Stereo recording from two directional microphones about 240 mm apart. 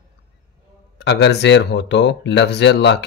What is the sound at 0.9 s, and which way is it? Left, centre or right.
Speech, left.